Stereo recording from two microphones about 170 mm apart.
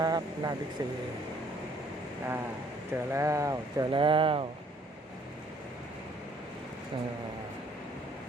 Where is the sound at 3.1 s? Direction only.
20° right (ahead or behind).